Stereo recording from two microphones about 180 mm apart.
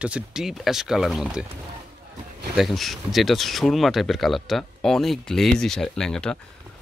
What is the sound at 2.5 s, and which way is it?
Speech, centre (ahead or behind).